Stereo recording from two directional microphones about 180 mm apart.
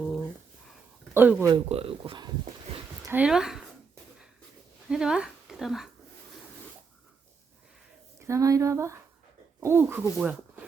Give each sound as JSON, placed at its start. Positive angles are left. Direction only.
{"t": 1.1, "sound": "speech", "side_deg": -10}
{"t": 1.5, "sound": "speech", "side_deg": -30}
{"t": 3.1, "sound": "speech", "side_deg": -5}
{"t": 4.9, "sound": "speech", "side_deg": -5}
{"t": 8.2, "sound": "speech", "side_deg": -15}